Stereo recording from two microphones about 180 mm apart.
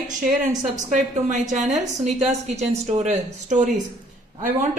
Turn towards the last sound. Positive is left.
turn(degrees=-45)  # may be behind; listen again after turning